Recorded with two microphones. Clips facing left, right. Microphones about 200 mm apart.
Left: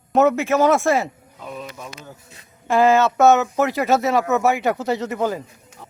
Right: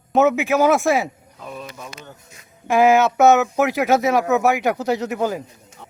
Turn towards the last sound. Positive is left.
turn(degrees=-5)  # may be behind; listen again after turning